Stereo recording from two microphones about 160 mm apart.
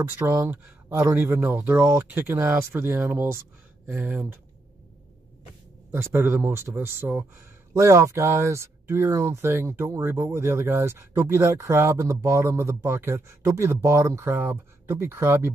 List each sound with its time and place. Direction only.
0.2 s speech: 15° right (ahead or behind)
5.9 s speech: 15° right (ahead or behind)